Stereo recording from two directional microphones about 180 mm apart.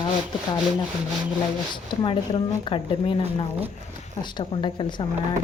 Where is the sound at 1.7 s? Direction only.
25° left (ahead or behind).